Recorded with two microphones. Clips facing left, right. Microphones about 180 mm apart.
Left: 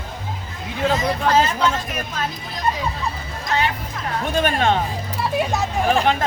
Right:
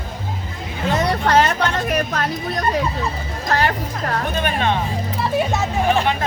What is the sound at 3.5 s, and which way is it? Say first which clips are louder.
Music: right 3 dB; 65° right (ahead or behind).